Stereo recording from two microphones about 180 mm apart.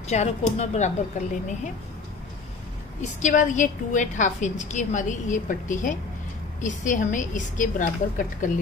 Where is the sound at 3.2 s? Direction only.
45° left (ahead or behind).